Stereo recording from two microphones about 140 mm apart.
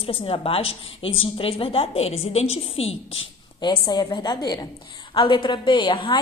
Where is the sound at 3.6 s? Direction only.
30° left (ahead or behind).